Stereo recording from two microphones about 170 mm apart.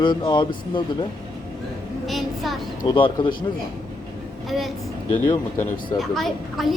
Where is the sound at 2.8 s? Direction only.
25° left (ahead or behind).